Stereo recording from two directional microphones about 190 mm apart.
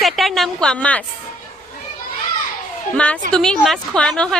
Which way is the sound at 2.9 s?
5° left (ahead or behind).